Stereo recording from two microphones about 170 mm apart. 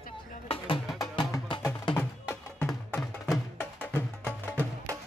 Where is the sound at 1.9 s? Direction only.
10° left (ahead or behind).